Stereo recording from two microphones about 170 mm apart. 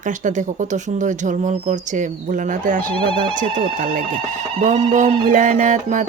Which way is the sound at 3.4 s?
45° right (ahead or behind).